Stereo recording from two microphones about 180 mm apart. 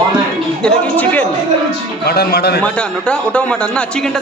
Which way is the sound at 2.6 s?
5° left (ahead or behind).